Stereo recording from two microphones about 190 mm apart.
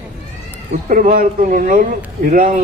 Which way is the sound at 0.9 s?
45° right (ahead or behind).